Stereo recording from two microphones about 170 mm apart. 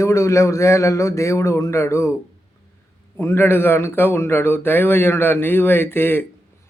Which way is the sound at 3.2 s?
15° left (ahead or behind).